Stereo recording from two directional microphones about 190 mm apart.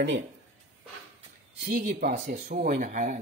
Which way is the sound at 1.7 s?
50° right (ahead or behind).